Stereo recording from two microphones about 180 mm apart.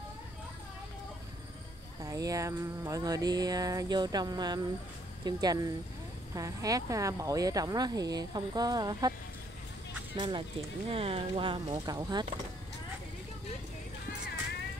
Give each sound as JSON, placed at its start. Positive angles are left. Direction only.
{"t": 2.0, "sound": "speech", "side_deg": -20}
{"t": 10.1, "sound": "speech", "side_deg": -25}